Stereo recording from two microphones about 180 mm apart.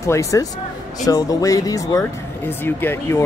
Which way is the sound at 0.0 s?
15° left (ahead or behind).